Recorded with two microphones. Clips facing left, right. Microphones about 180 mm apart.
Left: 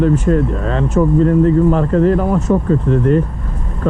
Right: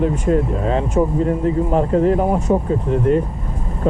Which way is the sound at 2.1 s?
30° right (ahead or behind).